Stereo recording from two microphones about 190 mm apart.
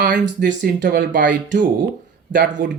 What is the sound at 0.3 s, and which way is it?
Speech, 45° right (ahead or behind).